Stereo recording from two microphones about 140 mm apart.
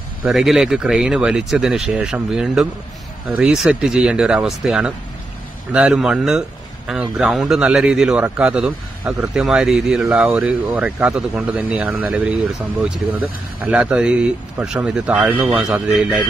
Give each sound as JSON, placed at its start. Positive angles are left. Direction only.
{"t": 0.2, "sound": "a man's voice", "side_deg": -5}